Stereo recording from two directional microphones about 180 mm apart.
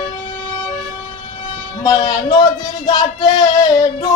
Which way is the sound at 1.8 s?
25° left (ahead or behind).